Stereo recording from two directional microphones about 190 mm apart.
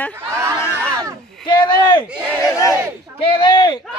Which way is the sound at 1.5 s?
20° left (ahead or behind).